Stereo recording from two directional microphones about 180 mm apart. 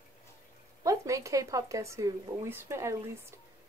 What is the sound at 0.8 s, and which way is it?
Speech, 15° right (ahead or behind).